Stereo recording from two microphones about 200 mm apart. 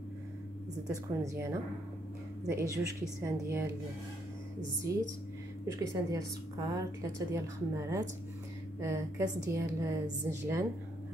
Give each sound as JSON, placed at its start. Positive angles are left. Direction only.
{"t": 1.2, "sound": "a woman's voice", "side_deg": -15}
{"t": 2.5, "sound": "a woman's voice", "side_deg": -15}
{"t": 4.9, "sound": "a woman's voice", "side_deg": -15}